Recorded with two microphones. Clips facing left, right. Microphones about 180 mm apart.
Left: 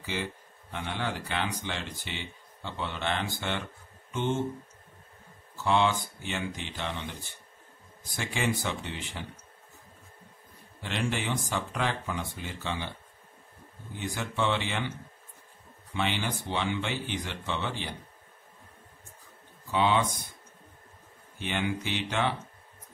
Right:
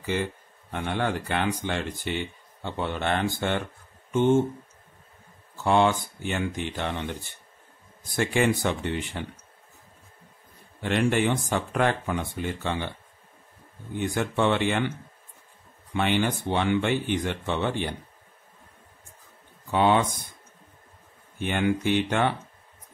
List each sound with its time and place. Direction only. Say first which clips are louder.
0.0 s speech: right 6 dB; 55° right (ahead or behind)
5.6 s speech: right 4 dB; 50° right (ahead or behind)
8.2 s speech: right 8 dB; 55° right (ahead or behind)
10.8 s speech: right 9 dB; 55° right (ahead or behind)
13.9 s speech: right 7 dB; 55° right (ahead or behind)
15.9 s speech: right 6 dB; 55° right (ahead or behind)
19.7 s speech: right 4 dB; 55° right (ahead or behind)
21.4 s speech: right 6 dB; 50° right (ahead or behind)